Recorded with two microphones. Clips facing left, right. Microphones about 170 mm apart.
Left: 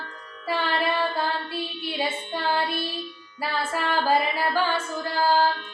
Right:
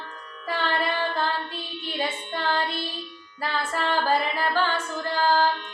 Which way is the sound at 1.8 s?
10° left (ahead or behind).